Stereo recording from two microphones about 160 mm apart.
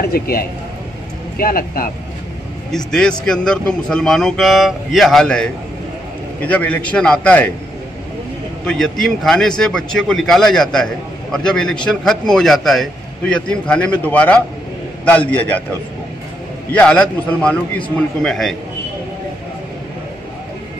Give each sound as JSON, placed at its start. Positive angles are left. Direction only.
{"t": 0.1, "sound": "a man's voice", "side_deg": 70}
{"t": 2.7, "sound": "a man's voice", "side_deg": 5}
{"t": 8.6, "sound": "a man's voice", "side_deg": 5}
{"t": 16.7, "sound": "a man's voice", "side_deg": 5}